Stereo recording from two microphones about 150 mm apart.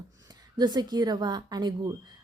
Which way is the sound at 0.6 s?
25° right (ahead or behind).